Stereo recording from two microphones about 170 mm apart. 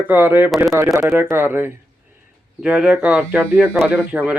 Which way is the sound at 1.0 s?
5° right (ahead or behind).